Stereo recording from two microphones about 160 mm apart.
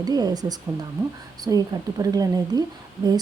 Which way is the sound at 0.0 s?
25° right (ahead or behind).